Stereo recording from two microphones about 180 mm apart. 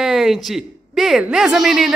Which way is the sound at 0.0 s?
Centre (ahead or behind).